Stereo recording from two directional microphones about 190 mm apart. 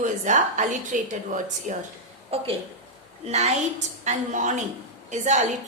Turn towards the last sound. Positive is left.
turn(degrees=-40)  # may be behind; listen again after turning